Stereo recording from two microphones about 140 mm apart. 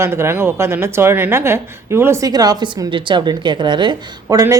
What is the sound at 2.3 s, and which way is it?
A woman's voice, 30° right (ahead or behind).